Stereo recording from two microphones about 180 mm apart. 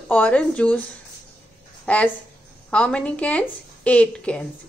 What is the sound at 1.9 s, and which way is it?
A woman's voice, 10° left (ahead or behind).